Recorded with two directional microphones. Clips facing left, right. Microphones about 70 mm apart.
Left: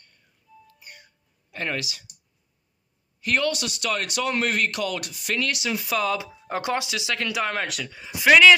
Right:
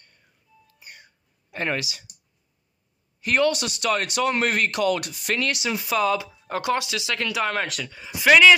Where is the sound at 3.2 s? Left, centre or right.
Right.